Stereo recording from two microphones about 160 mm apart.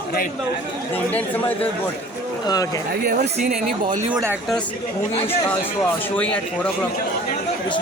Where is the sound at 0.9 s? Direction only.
10° left (ahead or behind).